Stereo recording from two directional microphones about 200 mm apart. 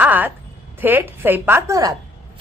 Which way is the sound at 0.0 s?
10° right (ahead or behind).